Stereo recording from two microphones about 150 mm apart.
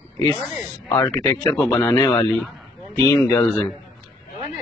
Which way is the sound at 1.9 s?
30° left (ahead or behind).